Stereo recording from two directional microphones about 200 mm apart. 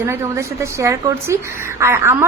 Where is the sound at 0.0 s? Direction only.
15° right (ahead or behind).